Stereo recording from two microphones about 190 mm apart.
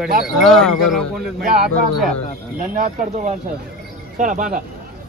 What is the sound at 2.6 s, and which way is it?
Speech, 40° right (ahead or behind).